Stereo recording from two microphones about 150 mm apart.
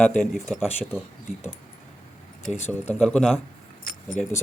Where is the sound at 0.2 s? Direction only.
Centre (ahead or behind).